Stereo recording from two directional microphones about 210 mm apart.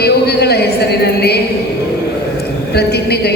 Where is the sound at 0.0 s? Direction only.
50° left (ahead or behind).